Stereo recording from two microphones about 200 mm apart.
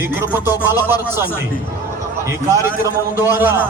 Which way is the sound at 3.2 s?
10° right (ahead or behind).